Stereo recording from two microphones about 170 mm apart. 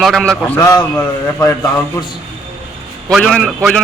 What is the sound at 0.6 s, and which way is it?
A man's voice, 20° left (ahead or behind).